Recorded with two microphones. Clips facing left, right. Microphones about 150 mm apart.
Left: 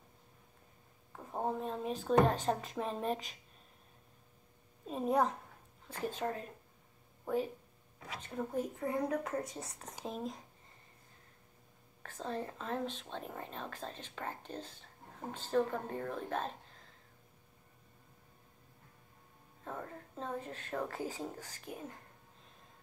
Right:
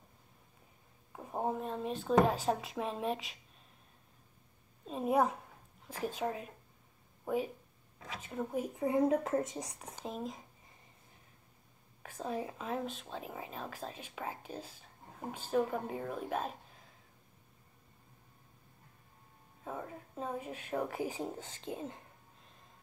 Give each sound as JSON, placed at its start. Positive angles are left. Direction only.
{"t": 1.1, "sound": "a woman's voice", "side_deg": -15}
{"t": 4.8, "sound": "a woman's voice", "side_deg": -5}
{"t": 8.7, "sound": "speech", "side_deg": -20}
{"t": 10.0, "sound": "a woman's voice", "side_deg": 0}
{"t": 12.0, "sound": "speech", "side_deg": -10}
{"t": 19.6, "sound": "speech", "side_deg": -5}